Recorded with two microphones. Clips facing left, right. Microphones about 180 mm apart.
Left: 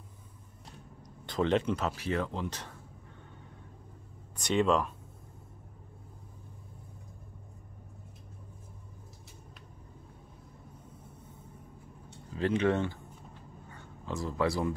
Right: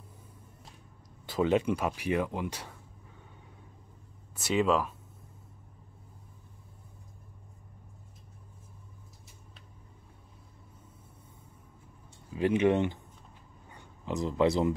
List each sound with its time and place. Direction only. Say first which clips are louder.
1.2 s speech: right 2 dB; 5° right (ahead or behind)
4.4 s speech: even; 5° right (ahead or behind)
12.3 s speech: right 3 dB; 15° right (ahead or behind)
13.7 s a sound: right 3 dB; 15° right (ahead or behind)